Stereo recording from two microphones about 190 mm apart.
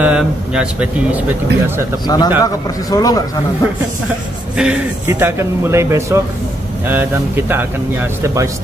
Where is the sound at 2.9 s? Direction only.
20° left (ahead or behind).